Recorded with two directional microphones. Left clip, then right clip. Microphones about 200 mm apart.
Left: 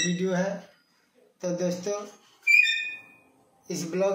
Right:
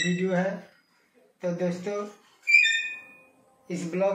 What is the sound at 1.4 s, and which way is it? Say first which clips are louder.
Speech: even; 15° left (ahead or behind).